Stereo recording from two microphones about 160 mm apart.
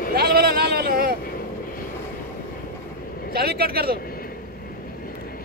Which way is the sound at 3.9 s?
65° left (ahead or behind).